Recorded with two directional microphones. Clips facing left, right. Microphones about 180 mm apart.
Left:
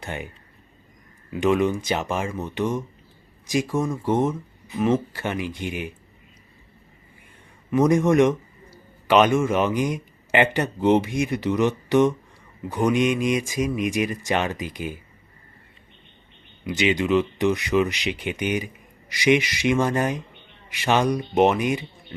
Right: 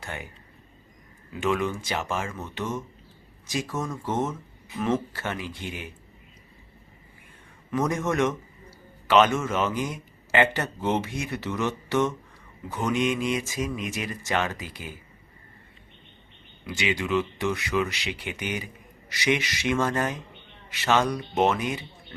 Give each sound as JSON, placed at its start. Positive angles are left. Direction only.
{"t": 0.0, "sound": "speech", "side_deg": 20}
{"t": 1.4, "sound": "speech", "side_deg": 20}
{"t": 7.7, "sound": "a man's voice", "side_deg": 15}
{"t": 16.6, "sound": "speech", "side_deg": 20}